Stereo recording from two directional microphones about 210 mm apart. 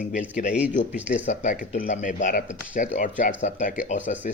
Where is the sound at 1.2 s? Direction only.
40° left (ahead or behind).